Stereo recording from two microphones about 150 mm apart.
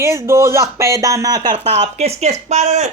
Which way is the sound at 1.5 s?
45° right (ahead or behind).